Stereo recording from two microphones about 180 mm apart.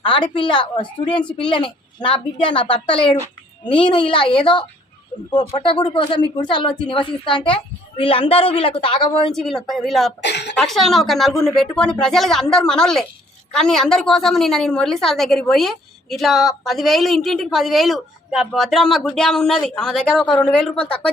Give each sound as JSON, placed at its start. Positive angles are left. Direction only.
{"t": 0.0, "sound": "a woman's voice", "side_deg": 25}
{"t": 9.3, "sound": "a woman's voice", "side_deg": 0}
{"t": 10.2, "sound": "speech", "side_deg": 70}
{"t": 10.6, "sound": "a woman's voice", "side_deg": 0}